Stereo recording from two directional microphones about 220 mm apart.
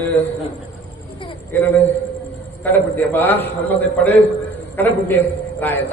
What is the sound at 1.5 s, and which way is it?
Speech, 10° left (ahead or behind).